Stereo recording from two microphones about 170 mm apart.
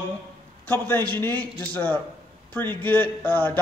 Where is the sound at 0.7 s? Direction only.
10° left (ahead or behind).